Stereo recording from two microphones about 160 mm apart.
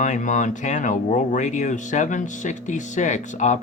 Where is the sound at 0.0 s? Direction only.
50° left (ahead or behind).